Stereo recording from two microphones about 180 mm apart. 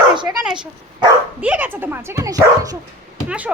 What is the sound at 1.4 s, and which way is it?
Speech, 10° right (ahead or behind).